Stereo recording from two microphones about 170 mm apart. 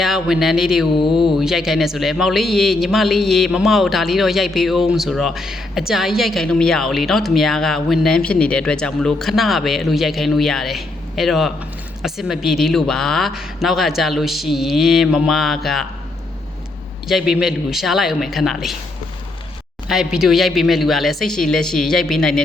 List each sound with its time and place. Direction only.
0.0 s a woman's voice: centre (ahead or behind)
0.9 s speech: 30° left (ahead or behind)
1.4 s a woman's voice: centre (ahead or behind)
17.1 s a woman's voice: centre (ahead or behind)
19.9 s a woman's voice: 5° right (ahead or behind)